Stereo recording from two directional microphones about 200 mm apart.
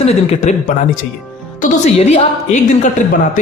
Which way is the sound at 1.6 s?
30° left (ahead or behind).